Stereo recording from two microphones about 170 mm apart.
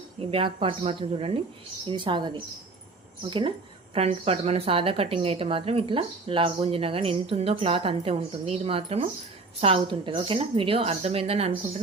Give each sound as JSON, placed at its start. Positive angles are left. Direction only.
{"t": 0.2, "sound": "a woman's voice", "side_deg": -30}